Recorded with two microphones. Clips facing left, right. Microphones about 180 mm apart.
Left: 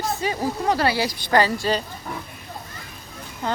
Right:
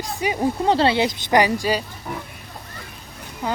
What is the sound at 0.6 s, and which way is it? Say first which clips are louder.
Speech: right 3 dB; 25° right (ahead or behind).